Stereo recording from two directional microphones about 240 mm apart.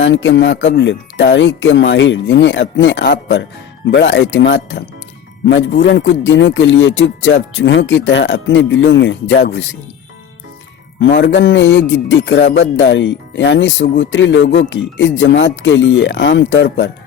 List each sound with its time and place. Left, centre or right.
0.0 s a man's voice: left
11.0 s a man's voice: left